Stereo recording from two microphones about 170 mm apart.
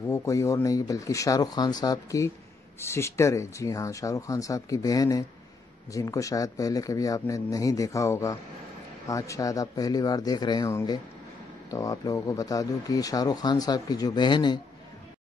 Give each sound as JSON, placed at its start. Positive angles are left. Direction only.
{"t": 0.1, "sound": "speech", "side_deg": 20}